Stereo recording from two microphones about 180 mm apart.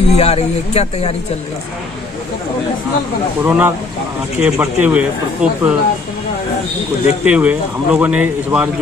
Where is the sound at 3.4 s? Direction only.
10° right (ahead or behind).